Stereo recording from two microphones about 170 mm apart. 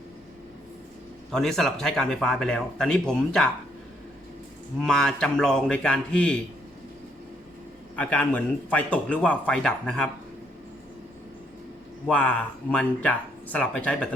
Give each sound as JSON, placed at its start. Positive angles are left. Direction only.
{"t": 1.3, "sound": "speech", "side_deg": 5}
{"t": 4.8, "sound": "speech", "side_deg": 5}
{"t": 7.9, "sound": "speech", "side_deg": 5}
{"t": 12.0, "sound": "speech", "side_deg": 10}